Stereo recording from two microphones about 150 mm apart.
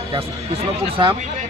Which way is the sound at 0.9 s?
35° right (ahead or behind).